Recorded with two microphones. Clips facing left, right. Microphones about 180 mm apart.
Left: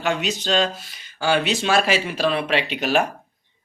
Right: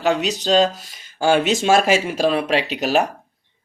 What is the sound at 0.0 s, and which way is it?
Speech, 35° right (ahead or behind).